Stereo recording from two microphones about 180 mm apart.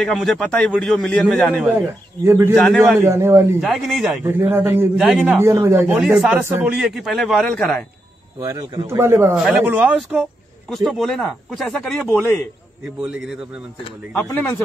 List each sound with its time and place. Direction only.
0.0 s speech: centre (ahead or behind)
2.2 s a man's voice: 15° right (ahead or behind)
2.5 s speech: 5° left (ahead or behind)
3.0 s a man's voice: 15° right (ahead or behind)
3.6 s speech: centre (ahead or behind)
4.2 s a man's voice: 10° right (ahead or behind)
5.0 s speech: centre (ahead or behind)
5.4 s speech: 15° right (ahead or behind); by 7.8 s 5° left (ahead or behind)
8.5 s a man's voice: 15° right (ahead or behind)
14.1 s speech: 10° left (ahead or behind)